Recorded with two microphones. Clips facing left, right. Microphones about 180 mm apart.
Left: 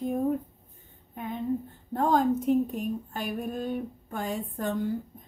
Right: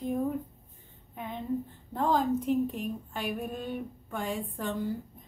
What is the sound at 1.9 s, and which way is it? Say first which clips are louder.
Speech: left 3 dB; 45° left (ahead or behind).